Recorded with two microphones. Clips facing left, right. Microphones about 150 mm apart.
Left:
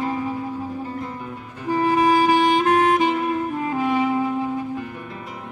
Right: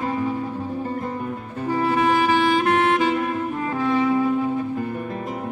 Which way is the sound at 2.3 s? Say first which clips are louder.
Left 1 dB; 15° left (ahead or behind).